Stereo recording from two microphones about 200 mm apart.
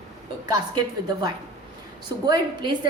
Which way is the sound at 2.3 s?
25° right (ahead or behind).